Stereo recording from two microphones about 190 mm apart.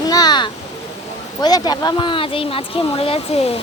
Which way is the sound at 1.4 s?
20° left (ahead or behind).